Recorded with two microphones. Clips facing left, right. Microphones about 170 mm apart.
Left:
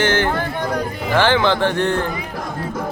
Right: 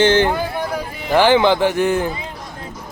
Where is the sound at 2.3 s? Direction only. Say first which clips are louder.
Left 7 dB; 60° left (ahead or behind).